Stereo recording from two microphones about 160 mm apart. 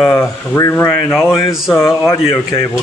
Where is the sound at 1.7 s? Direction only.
15° left (ahead or behind).